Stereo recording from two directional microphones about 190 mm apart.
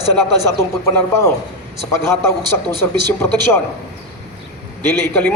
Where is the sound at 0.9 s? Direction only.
15° left (ahead or behind).